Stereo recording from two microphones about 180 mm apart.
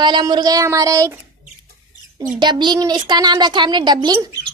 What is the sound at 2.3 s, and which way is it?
A woman's voice, 25° right (ahead or behind).